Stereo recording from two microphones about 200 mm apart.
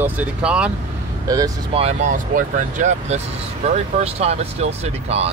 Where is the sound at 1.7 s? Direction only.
35° right (ahead or behind).